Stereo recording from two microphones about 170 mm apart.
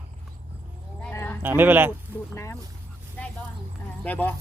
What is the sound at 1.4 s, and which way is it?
Speech, 10° right (ahead or behind).